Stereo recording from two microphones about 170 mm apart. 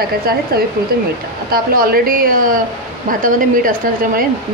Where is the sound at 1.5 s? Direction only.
60° right (ahead or behind).